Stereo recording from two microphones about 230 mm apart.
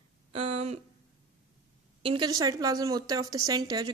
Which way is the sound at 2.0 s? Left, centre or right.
Right.